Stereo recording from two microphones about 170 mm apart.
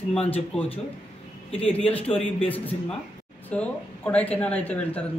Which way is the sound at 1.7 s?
35° left (ahead or behind).